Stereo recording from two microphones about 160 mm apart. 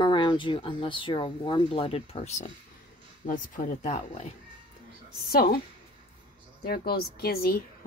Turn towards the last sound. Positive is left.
turn(degrees=70)  # may be behind; listen again after turning